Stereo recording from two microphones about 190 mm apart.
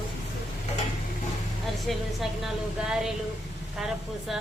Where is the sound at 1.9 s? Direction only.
Centre (ahead or behind).